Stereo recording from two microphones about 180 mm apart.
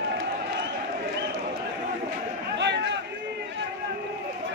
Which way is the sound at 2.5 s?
75° right (ahead or behind).